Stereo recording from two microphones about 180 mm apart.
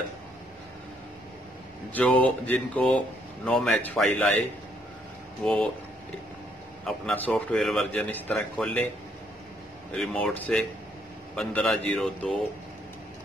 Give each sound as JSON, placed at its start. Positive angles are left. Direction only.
{"t": 2.0, "sound": "speech", "side_deg": 5}
{"t": 6.9, "sound": "speech", "side_deg": 5}
{"t": 9.9, "sound": "speech", "side_deg": 5}